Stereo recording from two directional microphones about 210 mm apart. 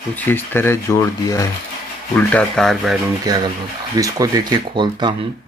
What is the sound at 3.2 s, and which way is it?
Speech, 20° right (ahead or behind).